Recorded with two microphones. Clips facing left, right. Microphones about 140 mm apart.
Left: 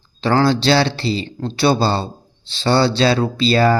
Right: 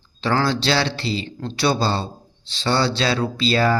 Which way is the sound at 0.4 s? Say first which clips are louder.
Left 5 dB; 30° left (ahead or behind).